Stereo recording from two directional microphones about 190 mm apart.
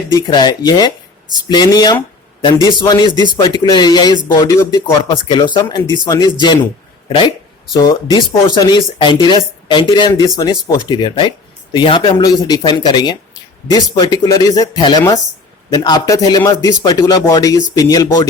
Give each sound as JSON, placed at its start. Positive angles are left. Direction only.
{"t": 0.2, "sound": "speech", "side_deg": 20}
{"t": 7.7, "sound": "speech", "side_deg": 20}